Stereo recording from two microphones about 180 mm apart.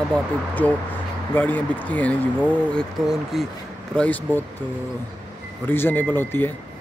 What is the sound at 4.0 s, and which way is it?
Speech, 10° left (ahead or behind).